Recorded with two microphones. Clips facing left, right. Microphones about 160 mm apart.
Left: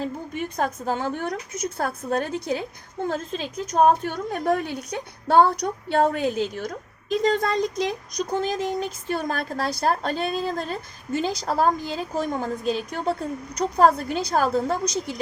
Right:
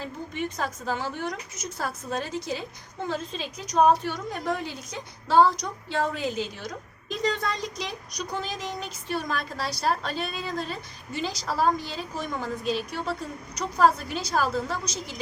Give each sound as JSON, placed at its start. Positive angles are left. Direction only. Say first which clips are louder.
{"t": 0.5, "sound": "a woman's voice", "louder": "left 5 dB", "side_deg": 55}